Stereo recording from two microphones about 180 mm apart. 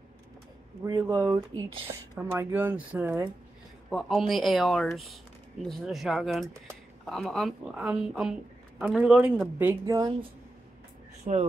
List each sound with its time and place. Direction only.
0.8 s speech: 15° right (ahead or behind)
4.3 s speech: centre (ahead or behind); by 10.1 s 20° right (ahead or behind)
11.3 s speech: 40° right (ahead or behind)